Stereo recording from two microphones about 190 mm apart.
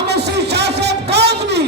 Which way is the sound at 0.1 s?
60° right (ahead or behind).